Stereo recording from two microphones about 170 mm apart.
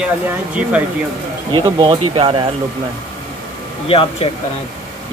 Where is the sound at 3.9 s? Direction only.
35° left (ahead or behind).